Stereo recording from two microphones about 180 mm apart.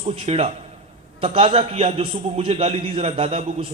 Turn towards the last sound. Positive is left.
turn(degrees=-35)  # may be behind; listen again after turning